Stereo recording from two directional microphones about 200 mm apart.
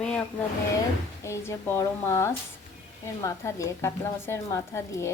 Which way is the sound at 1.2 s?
15° left (ahead or behind).